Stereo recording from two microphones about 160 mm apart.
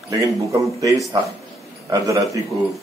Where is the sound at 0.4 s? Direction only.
20° right (ahead or behind).